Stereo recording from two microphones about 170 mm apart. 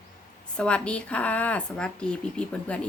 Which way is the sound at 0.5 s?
5° left (ahead or behind).